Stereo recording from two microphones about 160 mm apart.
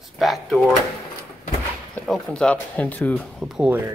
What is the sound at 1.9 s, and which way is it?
Speech, centre (ahead or behind).